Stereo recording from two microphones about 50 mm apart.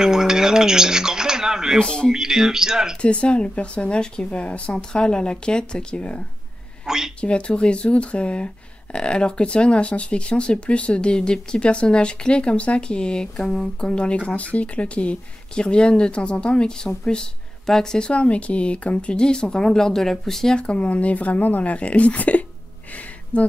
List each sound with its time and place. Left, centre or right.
0.0 s speech: centre
1.8 s speech: centre
2.1 s speech: centre
3.0 s speech: left; by 20.5 s centre
20.5 s speech: left